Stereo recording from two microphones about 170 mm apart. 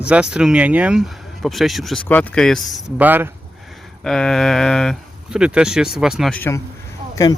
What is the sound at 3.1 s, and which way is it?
Speech, 10° right (ahead or behind).